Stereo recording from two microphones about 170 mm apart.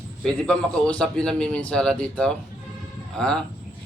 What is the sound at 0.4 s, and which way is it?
A man's voice, 5° left (ahead or behind).